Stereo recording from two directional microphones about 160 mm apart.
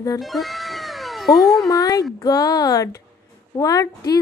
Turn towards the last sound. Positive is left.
turn(degrees=20)  # may be behind; listen again after turning